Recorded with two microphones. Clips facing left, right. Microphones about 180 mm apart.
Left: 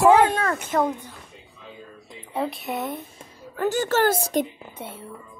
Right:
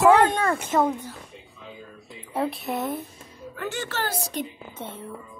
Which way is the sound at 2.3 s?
Centre (ahead or behind).